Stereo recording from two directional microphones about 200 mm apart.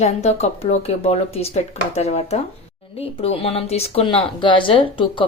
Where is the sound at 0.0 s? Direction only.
35° left (ahead or behind).